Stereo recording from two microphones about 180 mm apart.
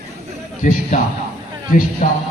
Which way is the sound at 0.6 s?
45° left (ahead or behind).